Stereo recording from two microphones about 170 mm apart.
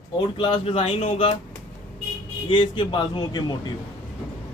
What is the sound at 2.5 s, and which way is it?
Speech, 30° left (ahead or behind).